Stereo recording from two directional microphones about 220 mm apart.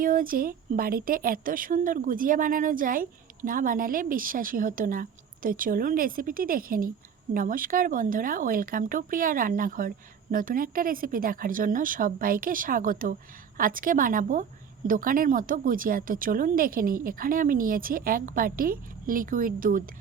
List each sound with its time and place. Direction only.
0.0 s speech: 40° right (ahead or behind)